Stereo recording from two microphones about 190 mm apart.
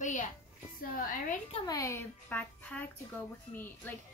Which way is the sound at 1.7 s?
15° left (ahead or behind).